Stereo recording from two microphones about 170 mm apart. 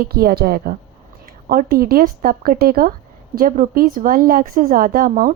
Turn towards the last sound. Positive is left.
turn(degrees=-50)  # may be behind; listen again after turning